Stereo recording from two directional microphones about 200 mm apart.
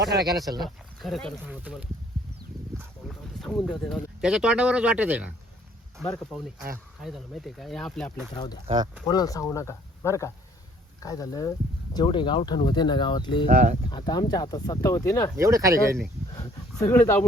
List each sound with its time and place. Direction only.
0.6 s speech: centre (ahead or behind)
3.1 s speech: centre (ahead or behind)
8.6 s speech: 20° right (ahead or behind)
9.0 s speech: 20° left (ahead or behind)
13.5 s speech: 40° right (ahead or behind)
13.9 s speech: 20° left (ahead or behind)
15.4 s speech: 15° right (ahead or behind)
16.8 s speech: 15° left (ahead or behind)